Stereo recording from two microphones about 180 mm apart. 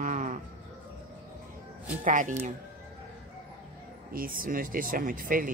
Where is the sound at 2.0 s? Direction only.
45° right (ahead or behind).